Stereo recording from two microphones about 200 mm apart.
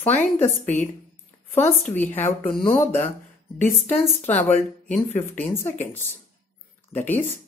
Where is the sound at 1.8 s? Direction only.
10° left (ahead or behind).